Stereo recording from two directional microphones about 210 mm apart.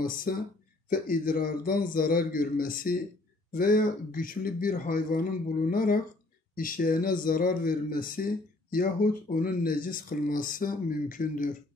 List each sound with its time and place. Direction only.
0.0 s a man's voice: 40° left (ahead or behind)